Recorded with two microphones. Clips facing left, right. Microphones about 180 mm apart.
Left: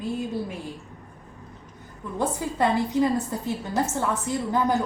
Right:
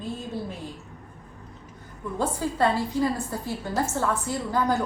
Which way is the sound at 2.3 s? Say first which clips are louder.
Even; 20° left (ahead or behind).